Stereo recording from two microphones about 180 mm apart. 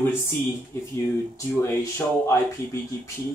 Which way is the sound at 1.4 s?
15° left (ahead or behind).